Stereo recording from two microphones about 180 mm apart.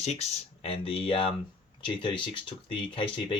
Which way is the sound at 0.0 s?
35° left (ahead or behind).